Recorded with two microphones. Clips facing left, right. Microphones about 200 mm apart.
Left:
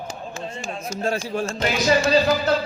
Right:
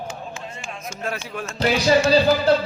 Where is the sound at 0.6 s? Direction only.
35° left (ahead or behind).